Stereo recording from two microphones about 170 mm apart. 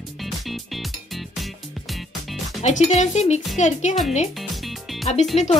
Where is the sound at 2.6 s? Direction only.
45° left (ahead or behind).